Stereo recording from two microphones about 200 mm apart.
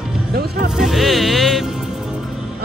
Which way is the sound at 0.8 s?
Centre (ahead or behind).